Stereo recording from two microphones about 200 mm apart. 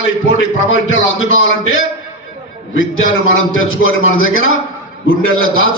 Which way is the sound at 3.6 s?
85° left.